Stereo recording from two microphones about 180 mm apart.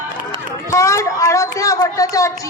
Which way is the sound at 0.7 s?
15° left (ahead or behind).